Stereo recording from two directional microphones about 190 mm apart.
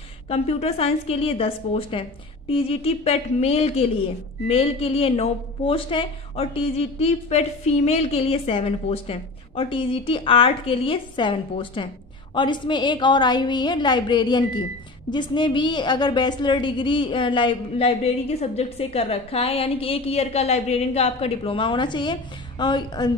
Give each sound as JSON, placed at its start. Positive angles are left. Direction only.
{"t": 0.3, "sound": "a woman's voice", "side_deg": 30}